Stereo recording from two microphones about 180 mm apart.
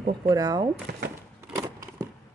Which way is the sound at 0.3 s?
20° right (ahead or behind).